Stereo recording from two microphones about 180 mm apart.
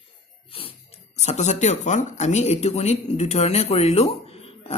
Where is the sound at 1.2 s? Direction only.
40° left (ahead or behind).